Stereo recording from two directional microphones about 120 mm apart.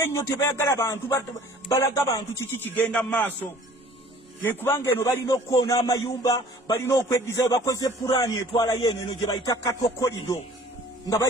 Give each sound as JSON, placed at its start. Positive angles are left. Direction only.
{"t": 0.0, "sound": "speech", "side_deg": 25}
{"t": 4.5, "sound": "speech", "side_deg": 20}